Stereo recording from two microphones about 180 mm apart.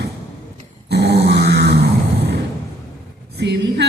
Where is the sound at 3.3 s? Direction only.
70° right (ahead or behind).